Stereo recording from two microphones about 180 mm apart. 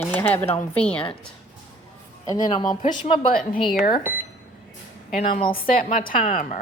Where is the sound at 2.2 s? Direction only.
25° left (ahead or behind).